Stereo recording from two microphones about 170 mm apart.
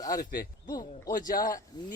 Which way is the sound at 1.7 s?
25° left (ahead or behind).